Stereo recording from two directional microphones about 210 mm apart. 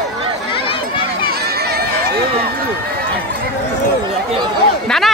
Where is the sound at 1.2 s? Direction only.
50° right (ahead or behind).